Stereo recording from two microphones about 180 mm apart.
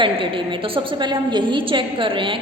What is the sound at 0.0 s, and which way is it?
A woman's voice, 30° right (ahead or behind).